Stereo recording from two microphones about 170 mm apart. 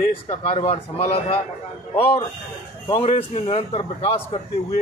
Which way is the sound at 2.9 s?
35° left (ahead or behind).